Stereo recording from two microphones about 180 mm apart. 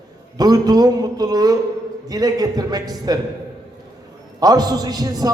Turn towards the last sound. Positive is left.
turn(degrees=-20)  # may be behind; listen again after turning